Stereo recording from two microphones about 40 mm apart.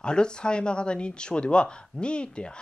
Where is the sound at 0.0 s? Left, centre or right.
Left.